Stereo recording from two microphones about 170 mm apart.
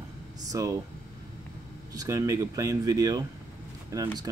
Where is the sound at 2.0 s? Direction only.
20° right (ahead or behind).